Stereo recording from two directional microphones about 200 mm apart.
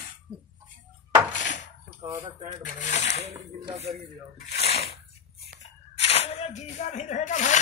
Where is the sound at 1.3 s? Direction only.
40° left (ahead or behind).